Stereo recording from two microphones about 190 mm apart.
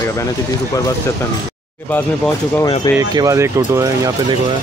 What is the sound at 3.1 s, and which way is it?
Speech, 20° right (ahead or behind).